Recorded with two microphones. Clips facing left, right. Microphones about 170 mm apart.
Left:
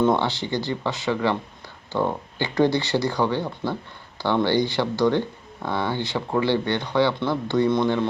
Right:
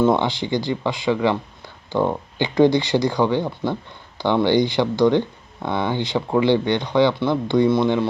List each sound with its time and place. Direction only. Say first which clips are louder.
0.0 s speech: right 3 dB; 10° right (ahead or behind)